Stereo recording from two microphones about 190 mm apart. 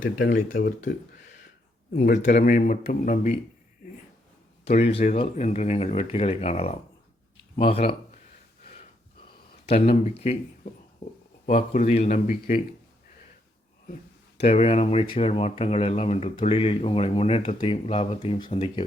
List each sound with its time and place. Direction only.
0.5 s a man's voice: 45° left (ahead or behind)
4.8 s speech: 35° left (ahead or behind)
9.6 s speech: 35° left (ahead or behind)
11.4 s speech: 40° left (ahead or behind)
14.4 s speech: 35° left (ahead or behind)